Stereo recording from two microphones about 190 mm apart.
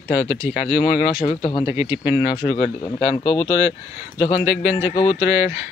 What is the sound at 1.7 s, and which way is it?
Speech, 15° right (ahead or behind).